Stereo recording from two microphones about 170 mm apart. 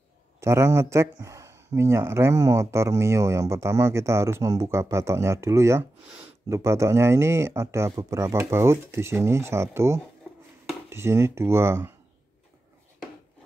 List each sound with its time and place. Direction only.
0.4 s speech: 15° right (ahead or behind)
10.3 s chopping: centre (ahead or behind)
10.9 s speech: 15° right (ahead or behind)